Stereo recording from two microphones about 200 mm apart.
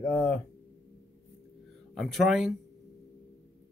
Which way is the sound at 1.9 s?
Centre (ahead or behind).